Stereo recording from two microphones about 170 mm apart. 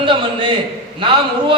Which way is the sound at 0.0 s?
30° right (ahead or behind).